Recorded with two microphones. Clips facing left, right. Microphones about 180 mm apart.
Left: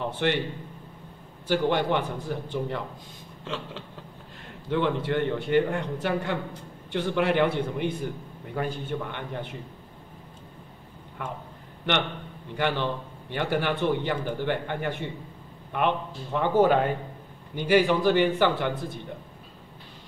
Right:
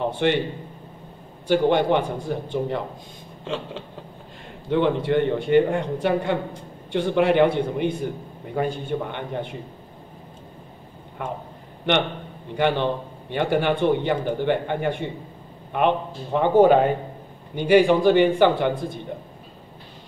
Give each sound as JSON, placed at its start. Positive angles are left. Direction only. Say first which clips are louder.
{"t": 0.0, "sound": "a man's voice", "louder": "right 5 dB", "side_deg": -20}
{"t": 1.5, "sound": "a man's voice", "louder": "right 5 dB", "side_deg": -20}
{"t": 2.1, "sound": "a man's voice", "louder": "right 4 dB", "side_deg": -10}
{"t": 2.5, "sound": "a man's voice", "louder": "right 5 dB", "side_deg": -25}
{"t": 11.8, "sound": "a man's voice", "louder": "right 5 dB", "side_deg": -20}